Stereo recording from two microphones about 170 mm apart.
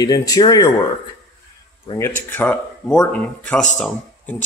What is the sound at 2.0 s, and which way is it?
Speech, 10° left (ahead or behind).